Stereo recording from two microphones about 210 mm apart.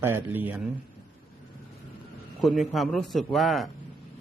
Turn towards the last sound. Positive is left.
turn(degrees=0)  # may be behind; listen again after turning